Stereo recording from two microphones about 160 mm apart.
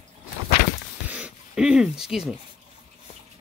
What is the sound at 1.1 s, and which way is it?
Speech, 5° right (ahead or behind).